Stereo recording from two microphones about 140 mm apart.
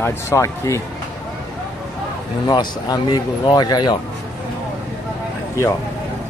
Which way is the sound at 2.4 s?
30° left (ahead or behind).